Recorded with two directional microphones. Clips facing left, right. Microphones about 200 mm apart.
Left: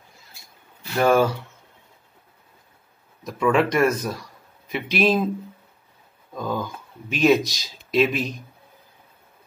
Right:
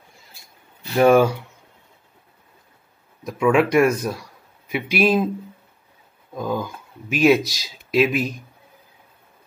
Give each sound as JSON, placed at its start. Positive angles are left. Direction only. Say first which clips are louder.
{"t": 0.9, "sound": "speech", "louder": "right 4 dB", "side_deg": -15}
{"t": 3.3, "sound": "speech", "louder": "right 2 dB", "side_deg": -10}
{"t": 6.3, "sound": "speech", "louder": "right 2 dB", "side_deg": -10}